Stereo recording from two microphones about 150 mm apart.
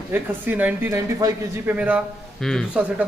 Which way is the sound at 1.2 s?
25° right (ahead or behind).